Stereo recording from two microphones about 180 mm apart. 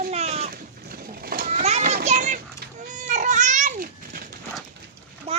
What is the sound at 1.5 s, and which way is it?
Children playing, 35° right (ahead or behind).